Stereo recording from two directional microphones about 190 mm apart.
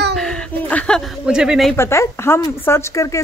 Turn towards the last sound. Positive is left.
turn(degrees=15)  # may be behind; listen again after turning